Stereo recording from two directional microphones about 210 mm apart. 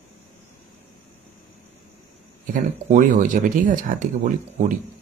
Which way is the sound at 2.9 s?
35° right (ahead or behind).